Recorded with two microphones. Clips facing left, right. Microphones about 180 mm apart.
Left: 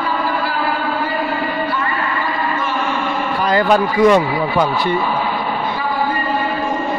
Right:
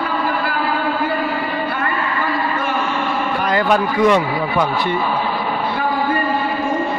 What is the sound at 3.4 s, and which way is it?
Speech, 35° left (ahead or behind).